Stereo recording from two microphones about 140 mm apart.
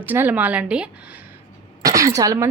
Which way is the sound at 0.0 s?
15° right (ahead or behind).